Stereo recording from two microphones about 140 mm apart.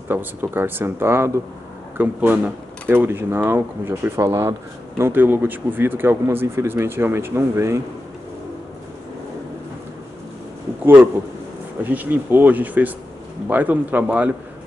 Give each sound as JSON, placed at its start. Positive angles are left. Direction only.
{"t": 0.1, "sound": "speech", "side_deg": -15}
{"t": 11.8, "sound": "speech", "side_deg": -10}